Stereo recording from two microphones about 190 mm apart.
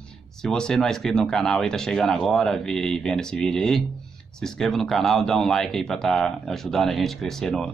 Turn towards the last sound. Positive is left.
turn(degrees=5)  # may be behind; listen again after turning